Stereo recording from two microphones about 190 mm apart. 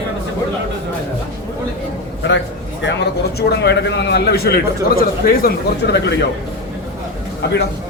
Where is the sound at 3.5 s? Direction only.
60° left (ahead or behind).